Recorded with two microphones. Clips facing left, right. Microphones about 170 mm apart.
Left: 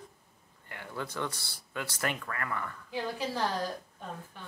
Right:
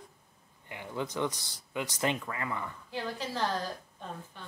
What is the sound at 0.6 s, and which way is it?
Speech, 15° right (ahead or behind).